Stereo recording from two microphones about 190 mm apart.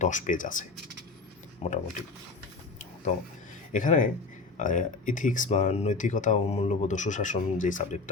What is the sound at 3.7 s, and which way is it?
Speech, 45° left (ahead or behind).